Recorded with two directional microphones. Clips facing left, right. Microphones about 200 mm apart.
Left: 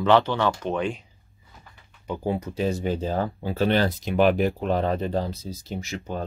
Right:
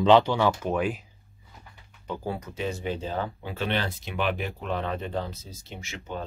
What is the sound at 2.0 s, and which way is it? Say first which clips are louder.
Speech: left 5 dB; 15° left (ahead or behind).